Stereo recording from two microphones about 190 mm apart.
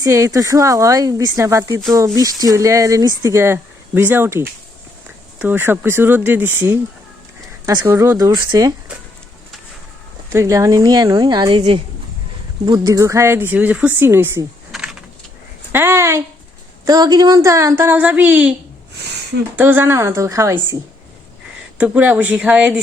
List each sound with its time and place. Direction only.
0.0 s speech: 15° right (ahead or behind)
10.3 s a woman's voice: 15° right (ahead or behind)
14.7 s a sound: 5° right (ahead or behind)
15.7 s speech: 10° right (ahead or behind)
19.5 s speech: 10° right (ahead or behind)
21.8 s speech: 5° right (ahead or behind)